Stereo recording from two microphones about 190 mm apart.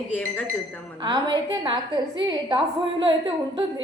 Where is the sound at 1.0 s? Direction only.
25° right (ahead or behind).